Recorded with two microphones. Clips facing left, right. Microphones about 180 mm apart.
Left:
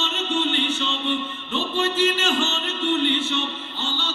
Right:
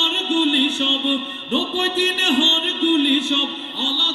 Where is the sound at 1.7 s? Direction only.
35° right (ahead or behind).